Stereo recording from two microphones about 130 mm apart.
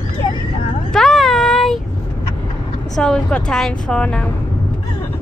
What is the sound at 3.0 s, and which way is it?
Speech, 5° left (ahead or behind).